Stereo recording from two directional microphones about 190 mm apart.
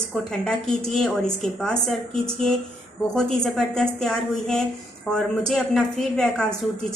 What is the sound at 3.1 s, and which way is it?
A woman's voice, 5° left (ahead or behind).